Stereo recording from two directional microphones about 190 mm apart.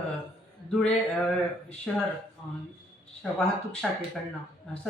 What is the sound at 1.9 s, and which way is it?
Speech, 5° left (ahead or behind).